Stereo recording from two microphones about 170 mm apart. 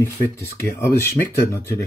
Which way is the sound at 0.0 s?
15° left (ahead or behind).